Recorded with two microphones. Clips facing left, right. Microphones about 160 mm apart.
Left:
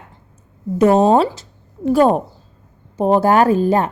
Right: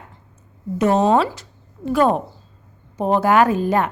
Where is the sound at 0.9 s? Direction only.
35° left (ahead or behind).